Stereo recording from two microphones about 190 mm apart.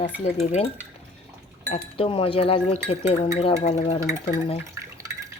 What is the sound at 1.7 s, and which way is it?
Speech, 30° left (ahead or behind).